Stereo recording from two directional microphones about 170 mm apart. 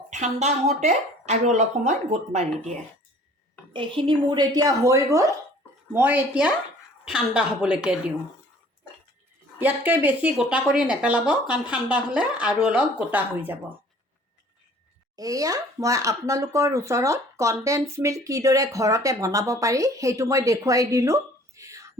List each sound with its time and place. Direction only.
0.1 s speech: 45° right (ahead or behind)
3.7 s a woman's voice: 30° right (ahead or behind); by 8.1 s 5° right (ahead or behind)
9.6 s speech: 10° right (ahead or behind)
15.1 s speech: 20° right (ahead or behind)